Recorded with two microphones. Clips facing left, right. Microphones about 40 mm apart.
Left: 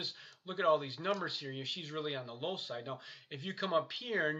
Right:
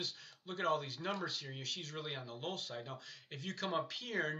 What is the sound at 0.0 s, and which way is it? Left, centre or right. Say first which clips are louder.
Speech: left 1 dB; centre.